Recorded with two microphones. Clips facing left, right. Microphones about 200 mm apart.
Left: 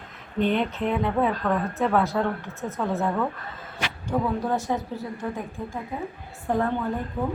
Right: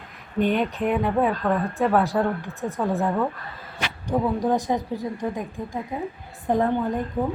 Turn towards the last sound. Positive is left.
turn(degrees=-15)  # may be behind; listen again after turning